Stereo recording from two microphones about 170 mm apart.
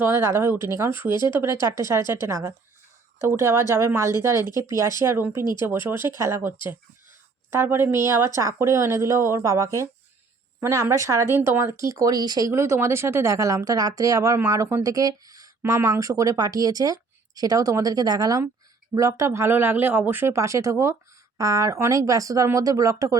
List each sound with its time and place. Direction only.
0.0 s speech: 15° right (ahead or behind)
1.1 s speech: 25° left (ahead or behind)
1.6 s speech: 15° right (ahead or behind)
7.5 s speech: 15° right (ahead or behind)